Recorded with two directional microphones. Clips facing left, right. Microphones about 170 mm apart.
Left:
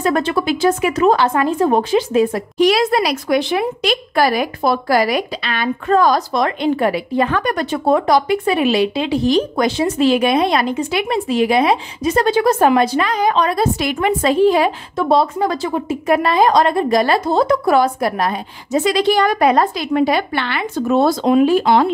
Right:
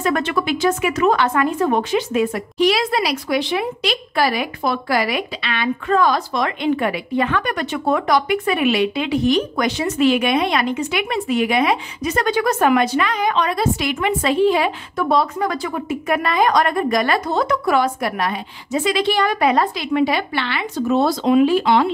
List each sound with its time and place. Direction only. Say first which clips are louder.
0.0 s speech: left 3 dB; 35° left (ahead or behind)
2.6 s speech: left 3 dB; 45° left (ahead or behind)
15.0 s speech: left 3 dB; 30° left (ahead or behind); by 21.8 s 45° left (ahead or behind)